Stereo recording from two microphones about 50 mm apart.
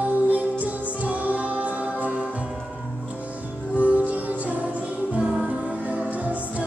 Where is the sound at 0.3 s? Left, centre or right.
Right.